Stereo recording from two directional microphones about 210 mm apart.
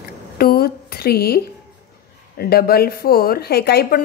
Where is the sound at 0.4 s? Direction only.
45° left (ahead or behind).